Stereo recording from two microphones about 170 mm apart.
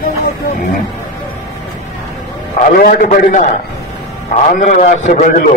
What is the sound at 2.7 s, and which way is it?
Speech, 50° left (ahead or behind).